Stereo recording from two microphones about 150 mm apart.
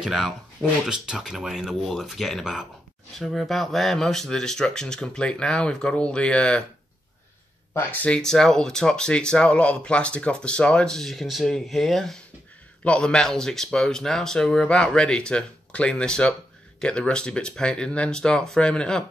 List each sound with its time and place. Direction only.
0.0 s speech: centre (ahead or behind)
7.7 s speech: 15° left (ahead or behind)